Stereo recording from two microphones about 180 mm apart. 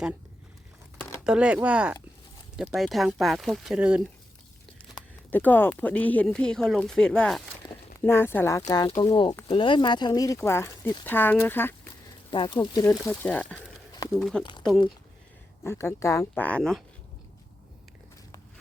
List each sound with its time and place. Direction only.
1.2 s speech: 5° right (ahead or behind)
5.3 s speech: 10° left (ahead or behind)
7.7 s speech: 15° left (ahead or behind)
12.3 s speech: 25° left (ahead or behind); by 14.4 s 5° left (ahead or behind)
15.6 s speech: 15° left (ahead or behind)